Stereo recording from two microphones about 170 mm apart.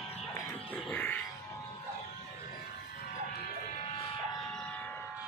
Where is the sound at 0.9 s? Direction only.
10° left (ahead or behind).